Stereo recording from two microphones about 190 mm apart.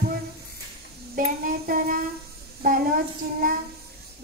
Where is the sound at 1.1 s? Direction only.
50° right (ahead or behind).